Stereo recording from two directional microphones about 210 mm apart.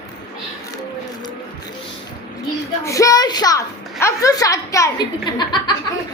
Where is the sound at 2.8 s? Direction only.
15° left (ahead or behind).